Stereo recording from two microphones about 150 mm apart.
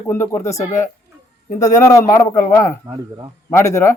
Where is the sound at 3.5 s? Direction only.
20° left (ahead or behind).